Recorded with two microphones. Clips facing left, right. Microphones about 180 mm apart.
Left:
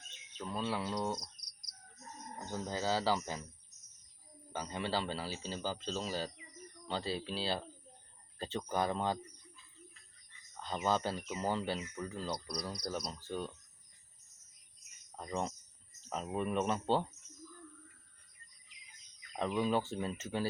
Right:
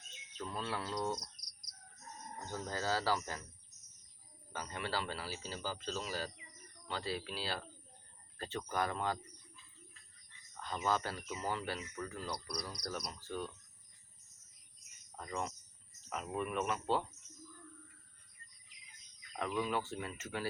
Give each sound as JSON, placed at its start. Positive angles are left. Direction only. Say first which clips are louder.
{"t": 0.3, "sound": "cricket", "louder": "left 3 dB", "side_deg": 10}
{"t": 2.5, "sound": "cricket", "louder": "left 2 dB", "side_deg": 15}
{"t": 4.5, "sound": "speech", "louder": "left 3 dB", "side_deg": 25}
{"t": 10.6, "sound": "speech", "louder": "left 2 dB", "side_deg": 25}
{"t": 15.2, "sound": "speech", "louder": "left 3 dB", "side_deg": 25}
{"t": 19.4, "sound": "speech", "louder": "left 4 dB", "side_deg": 25}